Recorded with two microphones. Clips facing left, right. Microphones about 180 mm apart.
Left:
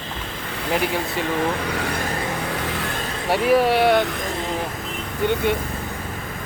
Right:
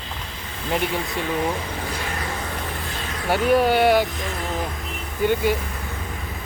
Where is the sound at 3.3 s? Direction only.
Centre (ahead or behind).